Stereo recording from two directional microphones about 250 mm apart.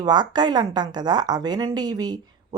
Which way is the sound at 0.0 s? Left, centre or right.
Centre.